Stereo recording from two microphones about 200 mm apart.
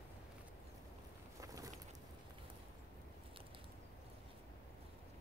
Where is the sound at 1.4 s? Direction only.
15° right (ahead or behind).